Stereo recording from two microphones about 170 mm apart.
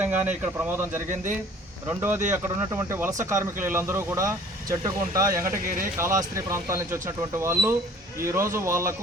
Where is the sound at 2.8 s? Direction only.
15° right (ahead or behind).